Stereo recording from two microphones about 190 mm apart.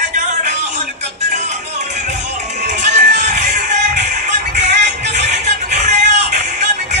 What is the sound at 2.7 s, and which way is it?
Music, 40° right (ahead or behind).